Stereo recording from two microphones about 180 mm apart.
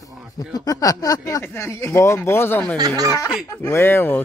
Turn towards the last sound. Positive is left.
turn(degrees=10)  # may be behind; listen again after turning